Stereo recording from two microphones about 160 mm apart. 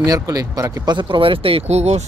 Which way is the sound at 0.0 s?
25° right (ahead or behind).